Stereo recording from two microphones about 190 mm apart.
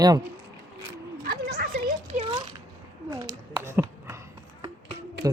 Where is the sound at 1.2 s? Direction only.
50° right (ahead or behind).